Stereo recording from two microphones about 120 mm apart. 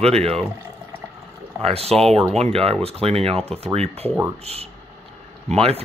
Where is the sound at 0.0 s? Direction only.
60° right (ahead or behind).